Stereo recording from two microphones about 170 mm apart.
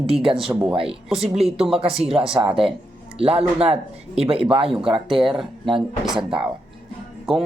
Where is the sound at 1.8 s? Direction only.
35° right (ahead or behind).